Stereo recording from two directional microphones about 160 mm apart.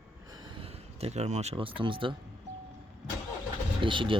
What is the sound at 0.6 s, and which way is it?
Speech, 40° right (ahead or behind).